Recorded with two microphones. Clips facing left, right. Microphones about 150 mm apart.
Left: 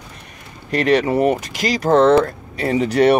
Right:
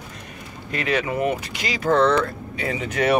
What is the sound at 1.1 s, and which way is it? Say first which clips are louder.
Speech: left 6 dB; 40° left (ahead or behind).